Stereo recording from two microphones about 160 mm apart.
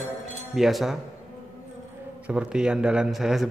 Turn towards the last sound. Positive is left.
turn(degrees=0)  # may be behind; listen again after turning